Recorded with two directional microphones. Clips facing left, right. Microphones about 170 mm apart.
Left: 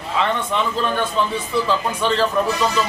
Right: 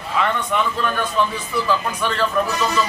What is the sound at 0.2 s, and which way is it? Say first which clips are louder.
A man's voice: even; 25° left (ahead or behind).